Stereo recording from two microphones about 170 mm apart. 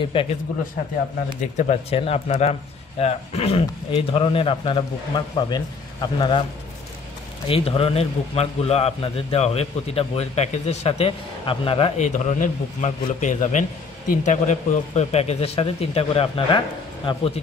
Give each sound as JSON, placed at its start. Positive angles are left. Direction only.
{"t": 0.1, "sound": "a man's voice", "side_deg": 30}
{"t": 1.6, "sound": "a man's voice", "side_deg": 40}
{"t": 7.4, "sound": "a man's voice", "side_deg": 35}